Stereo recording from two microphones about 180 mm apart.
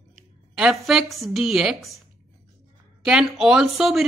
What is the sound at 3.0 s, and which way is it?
A woman's voice, 5° right (ahead or behind).